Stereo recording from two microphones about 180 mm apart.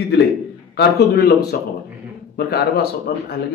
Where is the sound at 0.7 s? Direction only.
65° left (ahead or behind).